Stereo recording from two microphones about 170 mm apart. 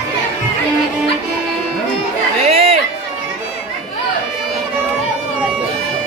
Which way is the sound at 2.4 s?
40° right (ahead or behind).